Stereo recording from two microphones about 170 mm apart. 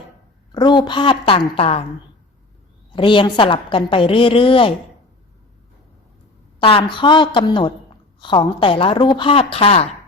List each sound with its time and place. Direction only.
0.5 s a woman's voice: 25° left (ahead or behind)
2.9 s a woman's voice: 30° left (ahead or behind)
6.6 s a woman's voice: 30° left (ahead or behind)